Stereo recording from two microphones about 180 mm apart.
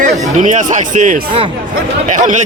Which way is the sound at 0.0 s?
45° right (ahead or behind).